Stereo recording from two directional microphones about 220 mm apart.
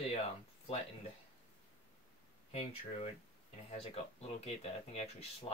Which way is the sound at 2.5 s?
25° left (ahead or behind).